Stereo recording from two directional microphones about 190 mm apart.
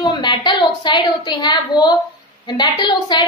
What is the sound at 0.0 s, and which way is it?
A woman's voice, 25° left (ahead or behind).